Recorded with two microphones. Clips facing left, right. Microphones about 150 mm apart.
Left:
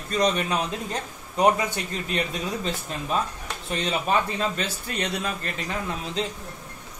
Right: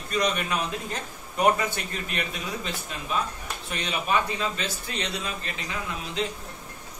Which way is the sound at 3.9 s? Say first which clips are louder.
Left 2 dB; 45° left (ahead or behind).